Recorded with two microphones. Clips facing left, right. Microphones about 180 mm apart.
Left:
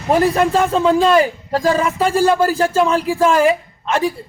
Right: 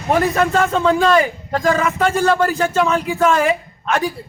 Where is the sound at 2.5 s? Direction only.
35° left (ahead or behind).